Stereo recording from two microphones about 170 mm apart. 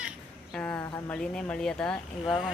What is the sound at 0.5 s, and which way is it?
Speech, 10° left (ahead or behind).